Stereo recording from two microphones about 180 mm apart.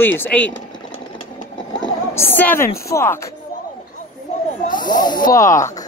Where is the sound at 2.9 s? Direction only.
15° left (ahead or behind).